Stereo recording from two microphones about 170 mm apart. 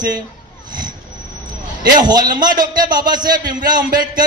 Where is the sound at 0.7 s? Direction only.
25° right (ahead or behind).